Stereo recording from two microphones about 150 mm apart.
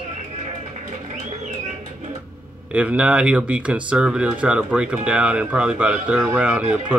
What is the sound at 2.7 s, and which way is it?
Speech, 10° right (ahead or behind).